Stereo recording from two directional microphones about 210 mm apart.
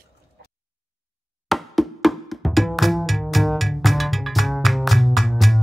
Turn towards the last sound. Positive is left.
turn(degrees=0)  # may be behind; listen again after turning